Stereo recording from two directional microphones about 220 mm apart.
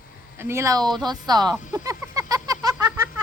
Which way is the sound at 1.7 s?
15° right (ahead or behind).